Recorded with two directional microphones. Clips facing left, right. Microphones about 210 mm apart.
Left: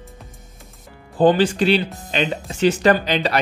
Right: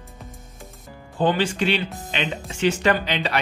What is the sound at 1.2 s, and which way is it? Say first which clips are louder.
A man's voice: left 6 dB; 40° left (ahead or behind).